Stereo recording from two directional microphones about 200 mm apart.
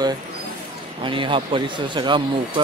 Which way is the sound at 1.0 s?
25° right (ahead or behind).